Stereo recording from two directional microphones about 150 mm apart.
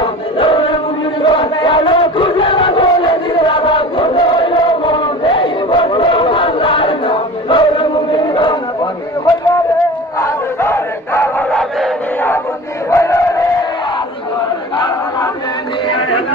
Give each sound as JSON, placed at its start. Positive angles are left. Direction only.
{"t": 0.0, "sound": "music", "side_deg": 35}
{"t": 1.2, "sound": "crowd", "side_deg": 30}
{"t": 10.2, "sound": "battle cry", "side_deg": 15}
{"t": 12.9, "sound": "crowd", "side_deg": 20}